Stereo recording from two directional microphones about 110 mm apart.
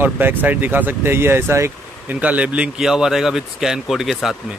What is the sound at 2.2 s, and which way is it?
Speech, 10° right (ahead or behind).